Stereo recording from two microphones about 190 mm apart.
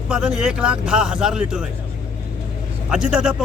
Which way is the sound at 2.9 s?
5° right (ahead or behind).